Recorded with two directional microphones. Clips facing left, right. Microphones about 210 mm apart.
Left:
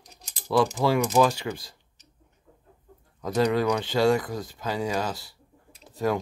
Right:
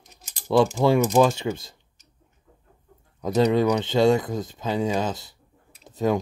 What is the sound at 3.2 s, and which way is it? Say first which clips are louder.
Speech: right 3 dB; 20° right (ahead or behind).